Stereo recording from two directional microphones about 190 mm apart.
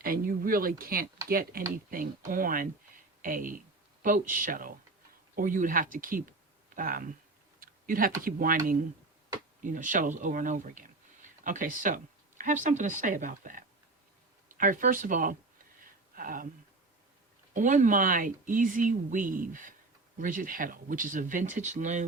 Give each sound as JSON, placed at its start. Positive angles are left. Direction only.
{"t": 0.0, "sound": "speech", "side_deg": -50}
{"t": 15.8, "sound": "a sound", "side_deg": -45}
{"t": 17.5, "sound": "speech", "side_deg": -40}